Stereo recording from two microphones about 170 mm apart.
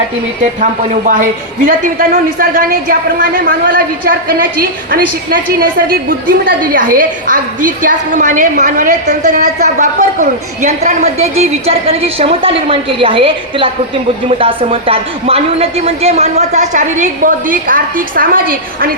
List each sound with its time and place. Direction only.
1.6 s a woman's voice: 55° right (ahead or behind)